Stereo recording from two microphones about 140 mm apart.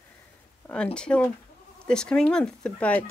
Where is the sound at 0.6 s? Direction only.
10° left (ahead or behind).